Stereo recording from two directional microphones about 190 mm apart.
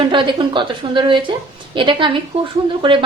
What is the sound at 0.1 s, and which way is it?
A woman's voice, 25° right (ahead or behind).